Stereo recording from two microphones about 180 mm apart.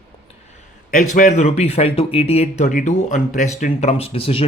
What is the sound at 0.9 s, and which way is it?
Speech, 45° left (ahead or behind).